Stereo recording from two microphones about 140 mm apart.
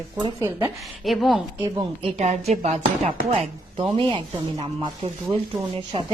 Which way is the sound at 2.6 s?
50° right (ahead or behind).